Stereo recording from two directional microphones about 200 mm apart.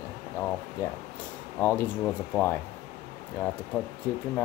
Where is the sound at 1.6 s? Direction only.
10° left (ahead or behind).